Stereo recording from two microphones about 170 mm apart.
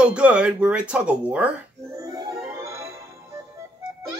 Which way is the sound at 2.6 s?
15° right (ahead or behind).